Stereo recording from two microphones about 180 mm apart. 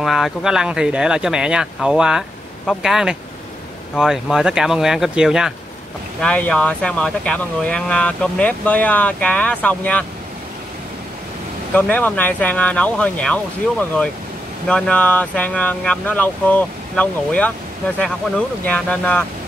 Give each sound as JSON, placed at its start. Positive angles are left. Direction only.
{"t": 0.0, "sound": "speech", "side_deg": 0}
{"t": 11.7, "sound": "speech", "side_deg": 10}
{"t": 18.7, "sound": "speech", "side_deg": 5}